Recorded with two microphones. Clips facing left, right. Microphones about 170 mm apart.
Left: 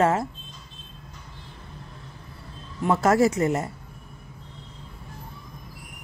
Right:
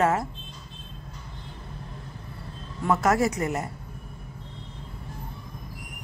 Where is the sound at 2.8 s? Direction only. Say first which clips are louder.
Left 3 dB; 25° left (ahead or behind).